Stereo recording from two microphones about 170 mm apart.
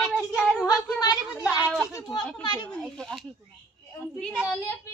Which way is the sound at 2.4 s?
25° left (ahead or behind).